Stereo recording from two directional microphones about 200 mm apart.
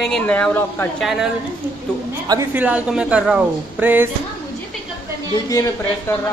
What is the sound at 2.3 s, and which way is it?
Speech, 10° right (ahead or behind).